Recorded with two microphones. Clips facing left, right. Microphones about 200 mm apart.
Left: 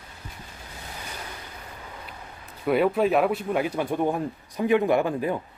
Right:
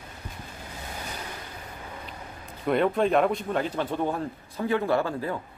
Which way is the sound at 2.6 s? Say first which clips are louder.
Left 2 dB; 5° left (ahead or behind).